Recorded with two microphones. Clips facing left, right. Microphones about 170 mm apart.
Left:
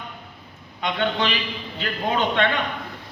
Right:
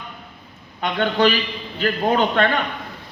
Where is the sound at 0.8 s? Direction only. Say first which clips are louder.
Right 5 dB; 45° right (ahead or behind).